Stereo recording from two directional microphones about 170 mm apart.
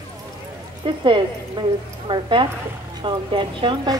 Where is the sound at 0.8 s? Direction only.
30° right (ahead or behind).